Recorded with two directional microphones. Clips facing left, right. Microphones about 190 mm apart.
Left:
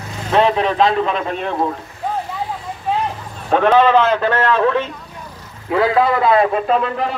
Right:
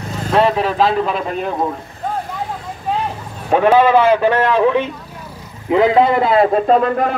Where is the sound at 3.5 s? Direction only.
10° right (ahead or behind).